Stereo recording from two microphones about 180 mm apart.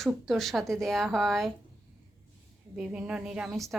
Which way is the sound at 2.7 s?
5° right (ahead or behind).